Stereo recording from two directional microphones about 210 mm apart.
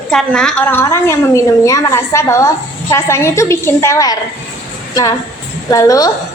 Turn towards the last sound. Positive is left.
turn(degrees=15)  # may be behind; listen again after turning